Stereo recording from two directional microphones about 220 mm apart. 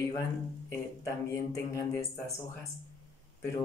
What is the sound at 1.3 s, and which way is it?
Speech, 15° left (ahead or behind).